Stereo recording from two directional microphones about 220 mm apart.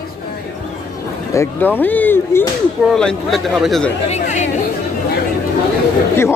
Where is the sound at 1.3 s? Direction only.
15° left (ahead or behind).